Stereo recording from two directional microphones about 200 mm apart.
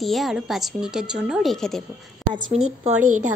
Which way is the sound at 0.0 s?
Centre (ahead or behind).